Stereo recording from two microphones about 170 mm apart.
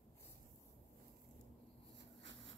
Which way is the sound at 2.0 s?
90° right.